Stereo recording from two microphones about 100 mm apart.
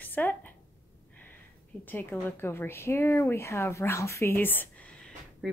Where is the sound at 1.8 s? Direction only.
20° left (ahead or behind).